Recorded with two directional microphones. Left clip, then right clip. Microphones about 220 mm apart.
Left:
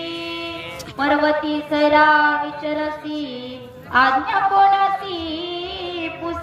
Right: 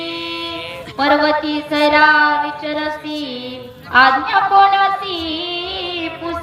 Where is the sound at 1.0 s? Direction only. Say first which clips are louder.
Right 4 dB; 20° right (ahead or behind).